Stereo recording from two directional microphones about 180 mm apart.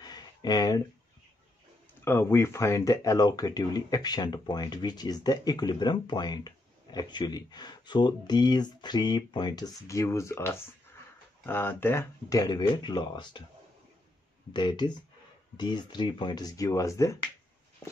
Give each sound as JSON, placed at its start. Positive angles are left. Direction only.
{"t": 0.0, "sound": "a sound", "side_deg": 20}
{"t": 2.0, "sound": "speech", "side_deg": 15}
{"t": 14.5, "sound": "speech", "side_deg": 25}